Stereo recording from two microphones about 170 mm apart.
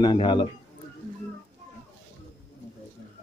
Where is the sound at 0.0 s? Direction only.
25° left (ahead or behind).